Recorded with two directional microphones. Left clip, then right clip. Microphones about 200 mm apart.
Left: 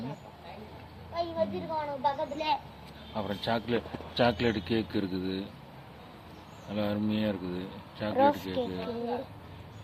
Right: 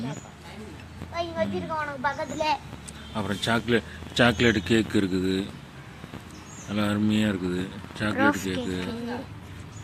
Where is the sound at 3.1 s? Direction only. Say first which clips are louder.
Right 5 dB; 10° right (ahead or behind).